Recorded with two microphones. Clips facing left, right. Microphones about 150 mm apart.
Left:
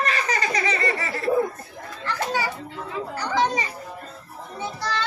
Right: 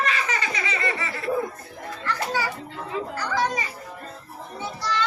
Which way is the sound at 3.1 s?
20° left (ahead or behind).